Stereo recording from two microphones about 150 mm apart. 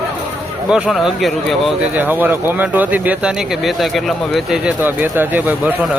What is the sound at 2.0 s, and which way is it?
A man's voice, 10° right (ahead or behind).